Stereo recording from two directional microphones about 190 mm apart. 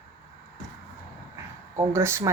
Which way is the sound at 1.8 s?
15° right (ahead or behind).